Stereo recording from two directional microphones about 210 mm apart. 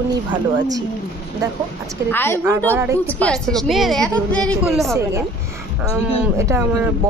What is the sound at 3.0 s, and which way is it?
A woman's voice, 5° left (ahead or behind).